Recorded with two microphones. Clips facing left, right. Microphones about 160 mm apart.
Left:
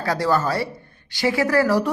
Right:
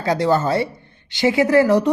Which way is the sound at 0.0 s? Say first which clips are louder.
Right 3 dB; 20° right (ahead or behind).